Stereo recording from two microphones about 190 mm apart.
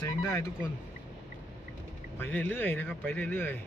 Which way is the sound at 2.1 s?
10° left (ahead or behind).